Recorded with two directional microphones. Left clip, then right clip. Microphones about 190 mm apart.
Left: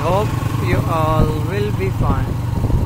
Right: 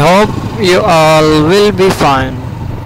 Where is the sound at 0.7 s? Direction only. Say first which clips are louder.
Right 13 dB; 55° right (ahead or behind).